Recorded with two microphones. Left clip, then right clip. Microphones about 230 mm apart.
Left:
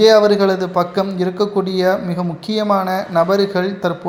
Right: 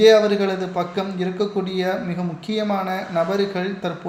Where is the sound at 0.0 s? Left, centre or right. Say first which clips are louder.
Left 4 dB; left.